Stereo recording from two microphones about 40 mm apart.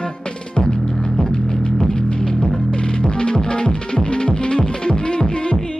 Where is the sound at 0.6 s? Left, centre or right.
Left.